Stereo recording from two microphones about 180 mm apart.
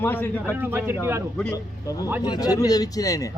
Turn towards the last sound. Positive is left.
turn(degrees=20)  # may be behind; listen again after turning